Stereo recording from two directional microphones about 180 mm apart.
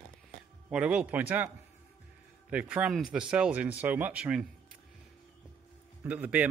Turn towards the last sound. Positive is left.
turn(degrees=-5)  # may be behind; listen again after turning